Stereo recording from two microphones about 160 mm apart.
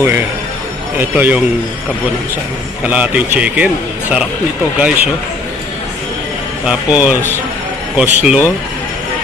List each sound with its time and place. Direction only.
0.9 s a man's voice: 10° right (ahead or behind)
2.9 s a man's voice: 10° right (ahead or behind)
6.7 s a man's voice: 10° right (ahead or behind)